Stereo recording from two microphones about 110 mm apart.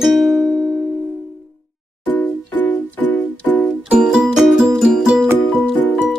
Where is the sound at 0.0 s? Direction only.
Centre (ahead or behind).